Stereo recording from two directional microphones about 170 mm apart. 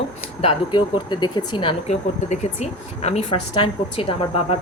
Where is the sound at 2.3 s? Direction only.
40° left (ahead or behind).